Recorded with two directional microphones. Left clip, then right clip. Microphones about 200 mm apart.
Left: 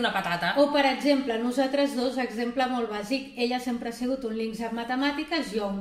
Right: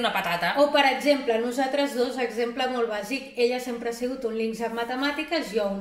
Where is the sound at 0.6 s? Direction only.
15° left (ahead or behind).